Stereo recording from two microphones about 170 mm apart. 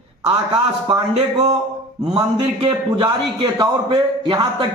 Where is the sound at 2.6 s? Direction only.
25° right (ahead or behind).